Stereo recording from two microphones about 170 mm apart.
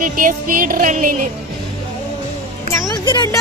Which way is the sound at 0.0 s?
55° right (ahead or behind).